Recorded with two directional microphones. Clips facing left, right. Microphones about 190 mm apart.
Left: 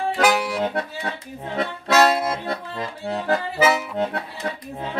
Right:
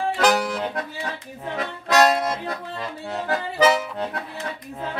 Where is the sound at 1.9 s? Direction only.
5° left (ahead or behind).